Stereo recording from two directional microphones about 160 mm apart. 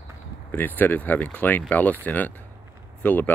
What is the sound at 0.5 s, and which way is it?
Speech, 10° left (ahead or behind).